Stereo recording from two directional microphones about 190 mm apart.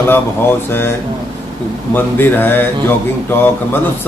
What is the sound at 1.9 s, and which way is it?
Speech, 10° left (ahead or behind).